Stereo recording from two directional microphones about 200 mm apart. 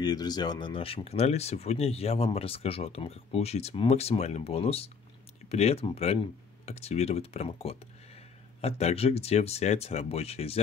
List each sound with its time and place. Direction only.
0.0 s speech: 20° left (ahead or behind)